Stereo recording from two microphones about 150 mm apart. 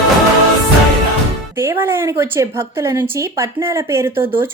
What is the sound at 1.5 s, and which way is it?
Speech, 15° right (ahead or behind).